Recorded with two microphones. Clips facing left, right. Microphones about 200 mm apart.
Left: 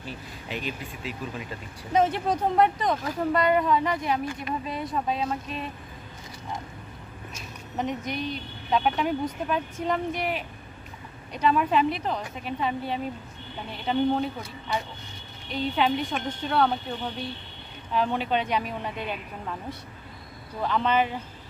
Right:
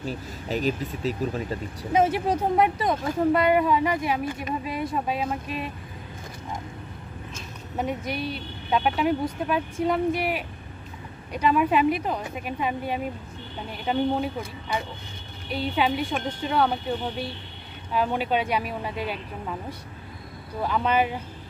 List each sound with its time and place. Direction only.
0.0 s speech: 40° right (ahead or behind)
2.0 s speech: 10° right (ahead or behind)
7.8 s speech: 10° right (ahead or behind)
15.5 s speech: 10° right (ahead or behind)
17.9 s speech: 10° right (ahead or behind)
20.6 s speech: 10° right (ahead or behind)